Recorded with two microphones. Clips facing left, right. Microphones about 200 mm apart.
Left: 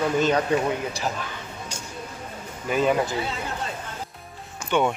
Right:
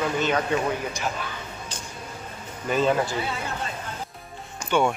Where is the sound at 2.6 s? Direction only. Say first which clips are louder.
Even; 10° left (ahead or behind).